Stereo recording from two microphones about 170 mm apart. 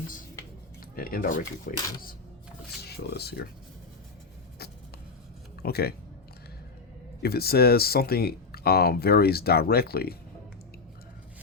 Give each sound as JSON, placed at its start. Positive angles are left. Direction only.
{"t": 0.9, "sound": "speech", "side_deg": 60}
{"t": 3.1, "sound": "speech", "side_deg": 75}
{"t": 5.6, "sound": "speech", "side_deg": 65}
{"t": 7.2, "sound": "speech", "side_deg": 65}